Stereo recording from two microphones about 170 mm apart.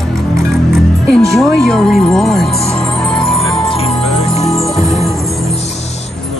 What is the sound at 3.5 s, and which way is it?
Music, 35° left (ahead or behind).